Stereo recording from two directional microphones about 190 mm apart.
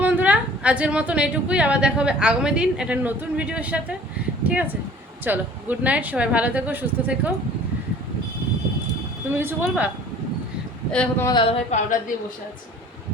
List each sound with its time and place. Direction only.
0.0 s a woman's voice: 10° right (ahead or behind)
9.3 s a woman's voice: 10° right (ahead or behind)
10.9 s speech: 5° left (ahead or behind)
11.7 s a woman's voice: 45° left (ahead or behind)